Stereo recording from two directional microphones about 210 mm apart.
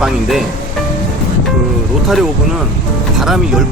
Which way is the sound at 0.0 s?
Centre (ahead or behind).